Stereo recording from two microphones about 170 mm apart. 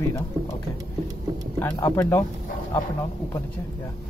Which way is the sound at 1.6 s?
20° left (ahead or behind).